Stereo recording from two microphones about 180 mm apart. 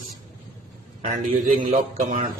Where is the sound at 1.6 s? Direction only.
45° right (ahead or behind).